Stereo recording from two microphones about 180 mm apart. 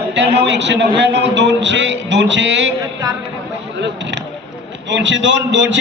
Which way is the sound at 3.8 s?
85° right.